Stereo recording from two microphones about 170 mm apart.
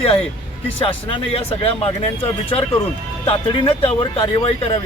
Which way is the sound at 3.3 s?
30° left (ahead or behind).